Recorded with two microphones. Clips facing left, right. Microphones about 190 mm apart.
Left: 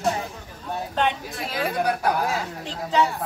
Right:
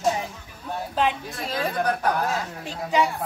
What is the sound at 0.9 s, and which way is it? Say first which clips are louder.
A woman's voice: right 1 dB; 5° right (ahead or behind).